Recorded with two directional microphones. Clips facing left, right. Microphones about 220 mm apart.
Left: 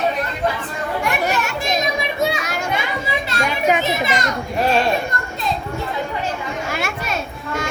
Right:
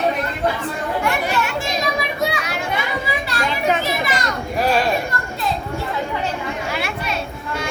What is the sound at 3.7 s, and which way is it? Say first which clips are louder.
Children playing: left 2 dB; 20° left (ahead or behind).